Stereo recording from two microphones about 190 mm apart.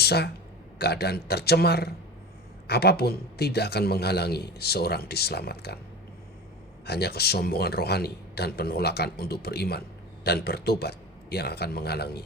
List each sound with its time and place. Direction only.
0.0 s a man's voice: 60° left (ahead or behind)
6.8 s a man's voice: 55° left (ahead or behind)